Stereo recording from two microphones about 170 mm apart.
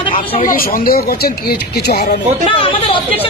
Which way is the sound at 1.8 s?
75° left (ahead or behind).